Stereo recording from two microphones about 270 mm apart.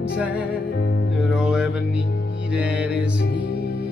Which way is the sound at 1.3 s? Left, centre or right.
Centre.